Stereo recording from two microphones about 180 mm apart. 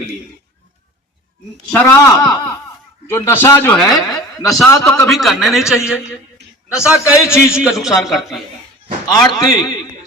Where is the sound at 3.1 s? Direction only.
15° left (ahead or behind).